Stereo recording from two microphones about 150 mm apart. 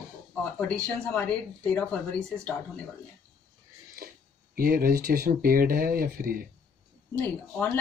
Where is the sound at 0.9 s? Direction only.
5° left (ahead or behind).